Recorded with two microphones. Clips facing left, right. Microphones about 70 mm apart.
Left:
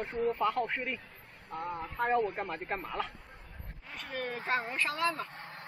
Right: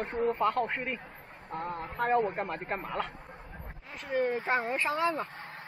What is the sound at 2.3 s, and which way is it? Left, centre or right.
Speech, centre.